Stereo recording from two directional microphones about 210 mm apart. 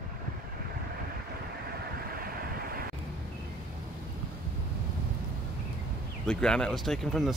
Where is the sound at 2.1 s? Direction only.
45° right (ahead or behind).